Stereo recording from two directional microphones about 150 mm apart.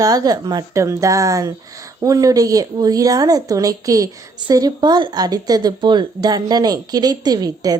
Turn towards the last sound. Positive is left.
turn(degrees=-25)  # may be behind; listen again after turning